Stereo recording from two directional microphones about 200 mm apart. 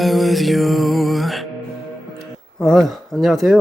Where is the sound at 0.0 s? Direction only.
Centre (ahead or behind).